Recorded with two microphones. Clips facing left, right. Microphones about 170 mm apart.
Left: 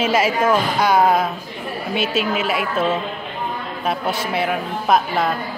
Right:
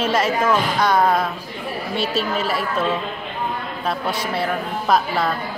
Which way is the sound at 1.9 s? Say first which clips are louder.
Left 2 dB; 30° right (ahead or behind).